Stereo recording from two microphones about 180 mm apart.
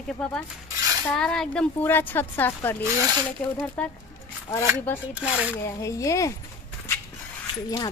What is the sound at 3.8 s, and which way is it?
Speech, 10° left (ahead or behind).